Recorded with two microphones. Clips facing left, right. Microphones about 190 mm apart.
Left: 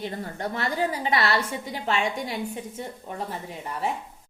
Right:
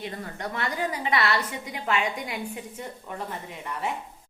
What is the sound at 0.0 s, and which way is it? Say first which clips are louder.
A woman's voice: left 3 dB; 30° left (ahead or behind).